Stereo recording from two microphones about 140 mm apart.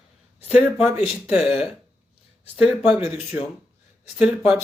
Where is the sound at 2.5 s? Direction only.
10° right (ahead or behind).